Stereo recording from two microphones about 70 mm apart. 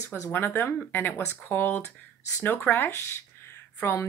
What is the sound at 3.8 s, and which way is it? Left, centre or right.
Speech, left.